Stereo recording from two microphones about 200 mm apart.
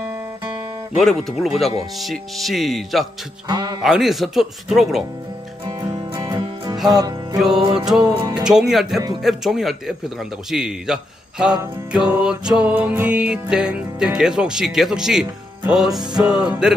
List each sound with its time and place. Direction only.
0.9 s music: centre (ahead or behind)
3.4 s music: 20° right (ahead or behind)
3.8 s music: centre (ahead or behind)
5.7 s music: 20° right (ahead or behind)
8.5 s music: centre (ahead or behind)
15.2 s speech: 5° right (ahead or behind)
16.1 s music: 5° right (ahead or behind)